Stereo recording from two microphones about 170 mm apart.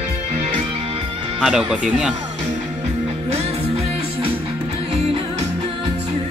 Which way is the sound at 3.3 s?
40° right (ahead or behind).